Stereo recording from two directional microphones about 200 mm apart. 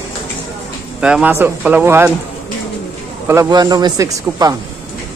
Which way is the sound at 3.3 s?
15° right (ahead or behind).